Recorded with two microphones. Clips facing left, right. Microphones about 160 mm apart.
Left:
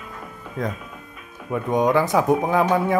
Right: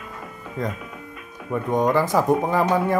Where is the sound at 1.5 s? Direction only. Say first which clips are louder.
Left 1 dB; centre (ahead or behind).